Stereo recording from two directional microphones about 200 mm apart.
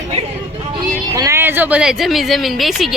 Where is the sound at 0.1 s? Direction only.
30° right (ahead or behind).